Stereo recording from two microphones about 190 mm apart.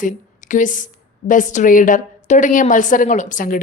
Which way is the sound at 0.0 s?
40° left (ahead or behind).